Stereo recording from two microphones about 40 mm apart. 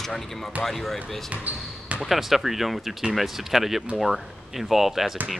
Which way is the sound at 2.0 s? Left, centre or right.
Centre.